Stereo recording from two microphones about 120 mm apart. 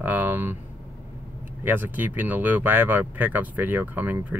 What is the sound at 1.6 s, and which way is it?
Speech, 15° right (ahead or behind).